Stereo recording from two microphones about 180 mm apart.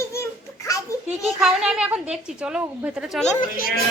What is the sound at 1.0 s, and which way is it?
A woman's voice, centre (ahead or behind).